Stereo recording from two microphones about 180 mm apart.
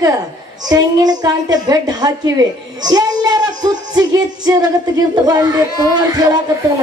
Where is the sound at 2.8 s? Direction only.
20° right (ahead or behind).